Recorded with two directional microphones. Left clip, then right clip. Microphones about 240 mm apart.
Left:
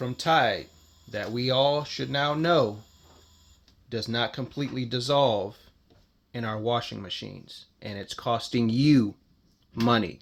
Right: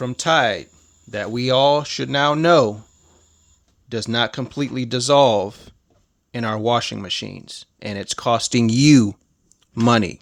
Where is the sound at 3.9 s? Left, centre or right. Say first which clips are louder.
Right 7 dB; right.